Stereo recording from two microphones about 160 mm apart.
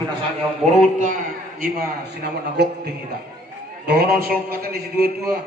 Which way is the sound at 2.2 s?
85° right.